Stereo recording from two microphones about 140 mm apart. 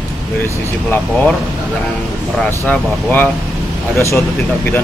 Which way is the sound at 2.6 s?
15° left (ahead or behind).